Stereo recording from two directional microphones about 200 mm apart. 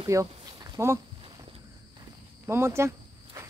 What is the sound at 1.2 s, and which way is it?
Walk, 25° right (ahead or behind).